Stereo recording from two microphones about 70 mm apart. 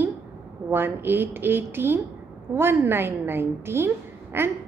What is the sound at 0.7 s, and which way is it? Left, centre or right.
A woman's voice, right.